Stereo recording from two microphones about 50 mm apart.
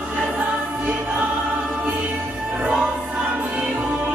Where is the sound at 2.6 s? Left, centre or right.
Right.